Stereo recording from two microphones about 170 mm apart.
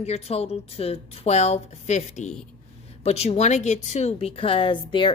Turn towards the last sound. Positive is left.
turn(degrees=30)  # may be behind; listen again after turning